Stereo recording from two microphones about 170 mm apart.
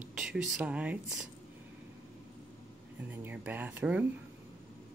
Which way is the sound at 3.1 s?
10° right (ahead or behind).